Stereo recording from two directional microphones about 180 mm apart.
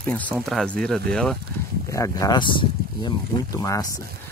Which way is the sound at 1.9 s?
20° left (ahead or behind).